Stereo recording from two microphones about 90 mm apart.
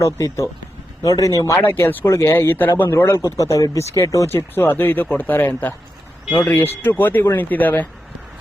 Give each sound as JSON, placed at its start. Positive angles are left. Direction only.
{"t": 0.0, "sound": "speech", "side_deg": 35}
{"t": 1.6, "sound": "speech", "side_deg": 20}